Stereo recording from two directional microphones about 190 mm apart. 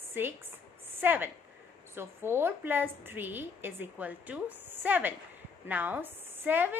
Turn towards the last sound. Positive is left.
turn(degrees=-10)  # may be behind; listen again after turning